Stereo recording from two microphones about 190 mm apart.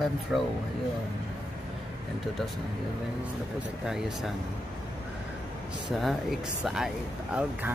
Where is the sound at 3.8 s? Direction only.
Centre (ahead or behind).